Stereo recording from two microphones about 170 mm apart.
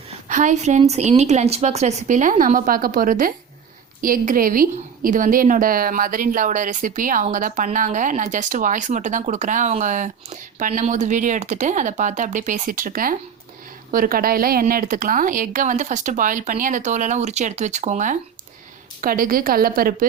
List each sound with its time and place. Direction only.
0.3 s a woman's voice: 45° right (ahead or behind)
19.0 s a woman's voice: 55° right (ahead or behind)